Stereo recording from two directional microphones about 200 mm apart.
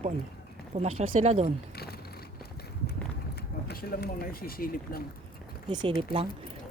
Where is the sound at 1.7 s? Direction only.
50° left (ahead or behind).